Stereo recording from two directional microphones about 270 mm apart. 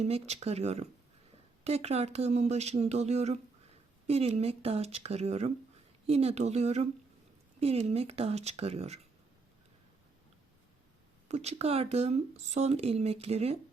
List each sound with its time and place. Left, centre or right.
0.0 s speech: right
11.3 s speech: right